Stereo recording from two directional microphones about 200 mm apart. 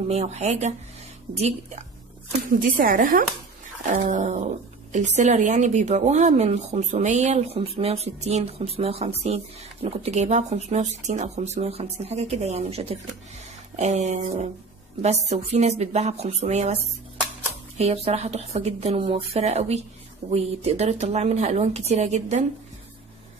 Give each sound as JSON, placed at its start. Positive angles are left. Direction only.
{"t": 0.1, "sound": "speech", "side_deg": -35}
{"t": 2.6, "sound": "speech", "side_deg": -45}